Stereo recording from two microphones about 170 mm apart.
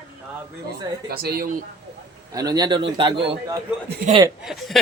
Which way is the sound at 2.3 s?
20° right (ahead or behind).